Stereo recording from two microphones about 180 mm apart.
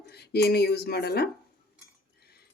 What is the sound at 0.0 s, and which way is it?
Speech, 65° left (ahead or behind).